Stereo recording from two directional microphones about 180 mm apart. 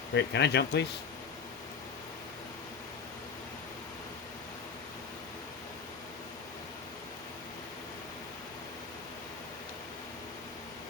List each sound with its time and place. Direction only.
0.1 s speech: 75° left (ahead or behind)